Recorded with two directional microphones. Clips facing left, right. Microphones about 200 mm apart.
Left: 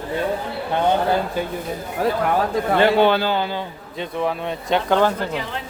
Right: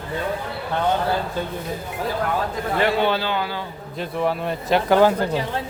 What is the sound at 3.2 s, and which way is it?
Speech, 30° left (ahead or behind).